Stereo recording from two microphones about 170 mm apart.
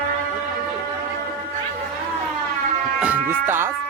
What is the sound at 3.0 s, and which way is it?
Music, 10° right (ahead or behind).